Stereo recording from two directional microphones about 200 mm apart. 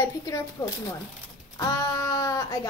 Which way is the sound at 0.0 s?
15° left (ahead or behind).